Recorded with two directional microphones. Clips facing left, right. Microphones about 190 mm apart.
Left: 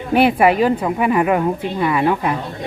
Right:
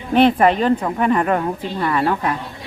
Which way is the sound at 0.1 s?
10° left (ahead or behind).